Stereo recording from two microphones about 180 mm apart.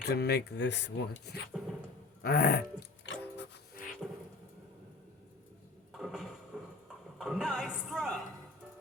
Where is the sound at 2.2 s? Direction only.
55° left (ahead or behind).